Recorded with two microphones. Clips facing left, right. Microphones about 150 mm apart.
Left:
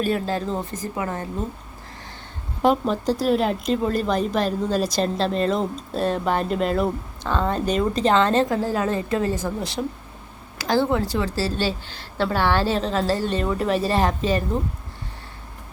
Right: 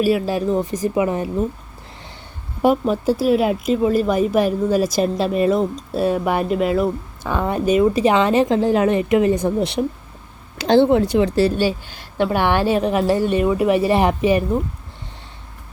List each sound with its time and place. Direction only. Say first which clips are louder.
0.0 s a woman's voice: right 5 dB; 10° right (ahead or behind)
2.6 s a woman's voice: right 3 dB; 10° right (ahead or behind)